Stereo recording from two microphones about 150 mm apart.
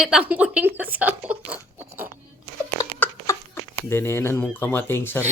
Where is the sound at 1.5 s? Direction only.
15° right (ahead or behind).